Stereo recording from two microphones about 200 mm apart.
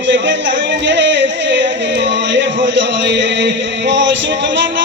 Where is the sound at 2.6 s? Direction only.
65° right (ahead or behind).